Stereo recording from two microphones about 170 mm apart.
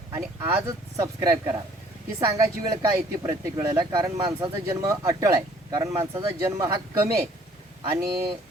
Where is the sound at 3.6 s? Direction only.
25° right (ahead or behind).